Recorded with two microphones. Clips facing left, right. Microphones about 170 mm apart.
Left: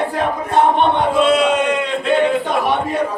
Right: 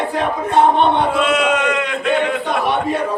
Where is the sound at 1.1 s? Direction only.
35° left (ahead or behind).